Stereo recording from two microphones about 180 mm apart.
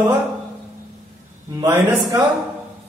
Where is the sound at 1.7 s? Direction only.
20° right (ahead or behind).